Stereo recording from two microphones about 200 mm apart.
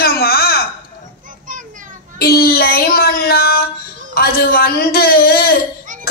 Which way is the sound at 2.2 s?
50° left (ahead or behind).